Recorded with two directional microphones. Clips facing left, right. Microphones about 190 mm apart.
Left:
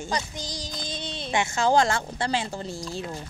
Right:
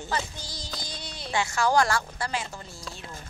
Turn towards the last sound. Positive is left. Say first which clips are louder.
# left 9 dB
turn(degrees=30)  # may be behind; listen again after turning